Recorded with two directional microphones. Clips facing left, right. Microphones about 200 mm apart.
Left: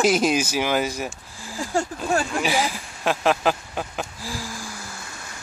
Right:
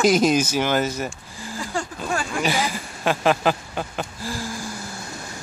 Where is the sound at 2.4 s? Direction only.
5° left (ahead or behind).